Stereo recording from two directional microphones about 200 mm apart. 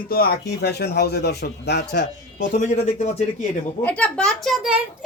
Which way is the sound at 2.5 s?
35° left (ahead or behind).